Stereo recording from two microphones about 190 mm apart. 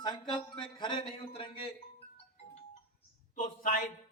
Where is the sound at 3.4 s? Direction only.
45° left (ahead or behind).